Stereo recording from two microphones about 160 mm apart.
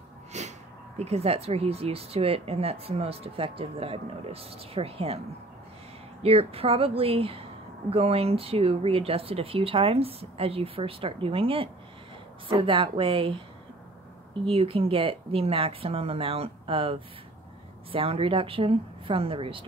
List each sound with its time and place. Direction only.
0.3 s a sound: 45° right (ahead or behind)
0.9 s speech: 40° right (ahead or behind)
6.2 s speech: 40° right (ahead or behind)
14.4 s speech: 35° right (ahead or behind)